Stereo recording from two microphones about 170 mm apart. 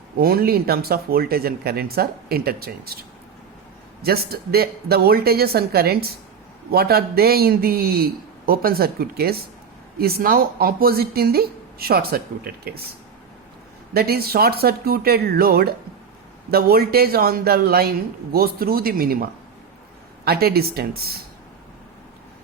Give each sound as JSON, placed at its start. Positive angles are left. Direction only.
{"t": 0.2, "sound": "speech", "side_deg": -60}
{"t": 4.0, "sound": "speech", "side_deg": -65}
{"t": 13.9, "sound": "speech", "side_deg": -65}